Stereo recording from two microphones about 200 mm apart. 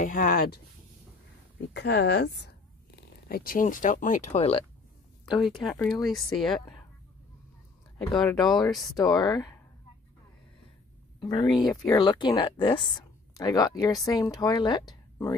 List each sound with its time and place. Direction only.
0.0 s speech: 40° left (ahead or behind)
1.7 s a woman's voice: 60° left (ahead or behind); by 4.6 s 30° left (ahead or behind)
5.2 s speech: centre (ahead or behind)
8.2 s speech: centre (ahead or behind)
8.9 s speech: 20° left (ahead or behind)
11.1 s speech: 20° left (ahead or behind)